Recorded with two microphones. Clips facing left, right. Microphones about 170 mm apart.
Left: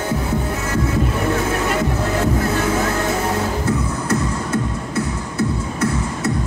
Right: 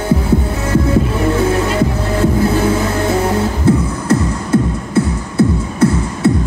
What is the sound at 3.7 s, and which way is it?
Music, 30° right (ahead or behind).